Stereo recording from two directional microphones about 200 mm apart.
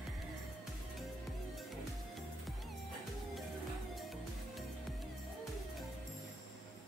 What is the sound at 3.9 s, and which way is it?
Music, centre (ahead or behind).